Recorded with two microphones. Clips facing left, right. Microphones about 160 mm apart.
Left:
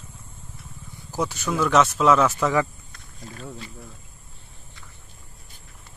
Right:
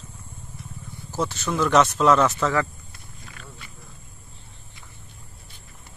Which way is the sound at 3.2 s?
35° left (ahead or behind).